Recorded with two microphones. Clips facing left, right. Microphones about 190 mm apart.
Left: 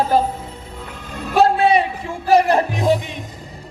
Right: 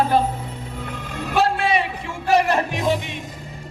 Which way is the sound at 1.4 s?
35° left (ahead or behind).